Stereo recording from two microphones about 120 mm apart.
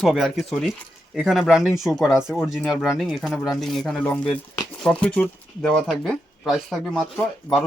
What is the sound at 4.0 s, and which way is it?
Speech, 15° left (ahead or behind).